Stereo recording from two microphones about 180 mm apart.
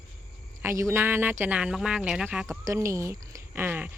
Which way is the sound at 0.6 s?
15° right (ahead or behind).